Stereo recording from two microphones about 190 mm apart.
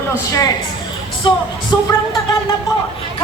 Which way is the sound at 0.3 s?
20° left (ahead or behind).